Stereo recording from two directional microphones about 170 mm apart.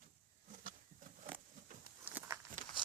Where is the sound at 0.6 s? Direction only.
50° right (ahead or behind).